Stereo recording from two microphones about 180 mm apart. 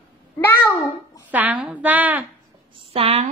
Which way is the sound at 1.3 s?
10° right (ahead or behind).